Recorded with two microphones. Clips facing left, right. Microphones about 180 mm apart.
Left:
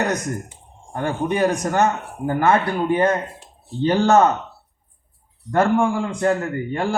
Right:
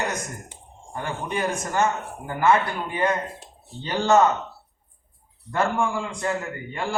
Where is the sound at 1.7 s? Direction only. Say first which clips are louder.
Left 4 dB; 60° left (ahead or behind).